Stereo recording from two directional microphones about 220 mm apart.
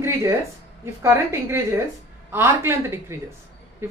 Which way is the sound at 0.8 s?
10° right (ahead or behind).